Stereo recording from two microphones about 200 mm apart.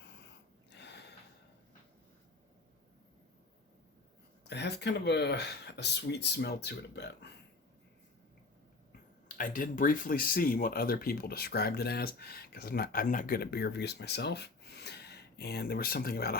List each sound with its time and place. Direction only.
0.7 s a sound: 60° left (ahead or behind)
4.4 s speech: 60° left (ahead or behind)
9.3 s speech: 45° left (ahead or behind)